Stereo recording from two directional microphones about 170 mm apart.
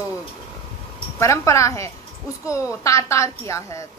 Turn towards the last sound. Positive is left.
turn(degrees=15)  # may be behind; listen again after turning